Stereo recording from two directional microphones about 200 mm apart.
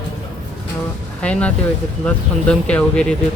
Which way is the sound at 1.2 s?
5° left (ahead or behind).